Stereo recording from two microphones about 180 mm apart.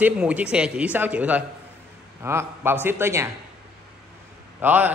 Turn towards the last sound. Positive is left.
turn(degrees=-10)  # may be behind; listen again after turning